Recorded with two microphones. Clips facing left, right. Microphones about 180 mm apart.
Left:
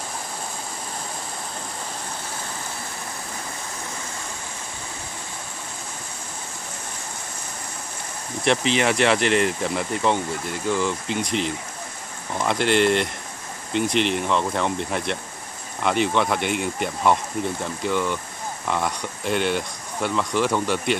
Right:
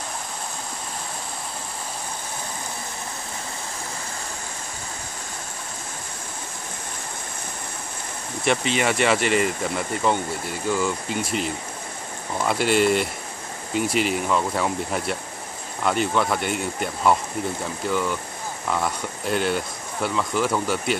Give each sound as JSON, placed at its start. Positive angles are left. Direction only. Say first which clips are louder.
{"t": 8.5, "sound": "speech", "louder": "left 2 dB", "side_deg": 0}